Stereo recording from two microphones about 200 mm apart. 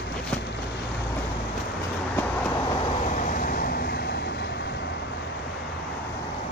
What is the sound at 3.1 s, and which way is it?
Vehicle, 40° left (ahead or behind).